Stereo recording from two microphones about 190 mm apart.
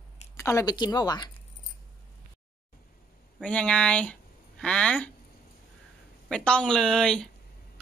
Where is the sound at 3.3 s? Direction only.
5° left (ahead or behind).